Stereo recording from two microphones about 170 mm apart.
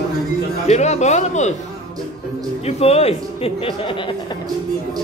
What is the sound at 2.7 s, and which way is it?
Speech, 35° left (ahead or behind).